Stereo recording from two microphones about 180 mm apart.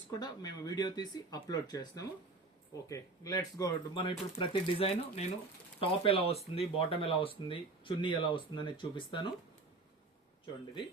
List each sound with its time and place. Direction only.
0.2 s speech: 20° left (ahead or behind)